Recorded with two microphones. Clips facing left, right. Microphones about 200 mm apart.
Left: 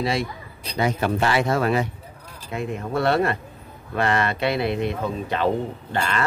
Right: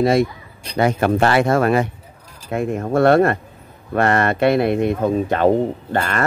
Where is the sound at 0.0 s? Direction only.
45° right (ahead or behind).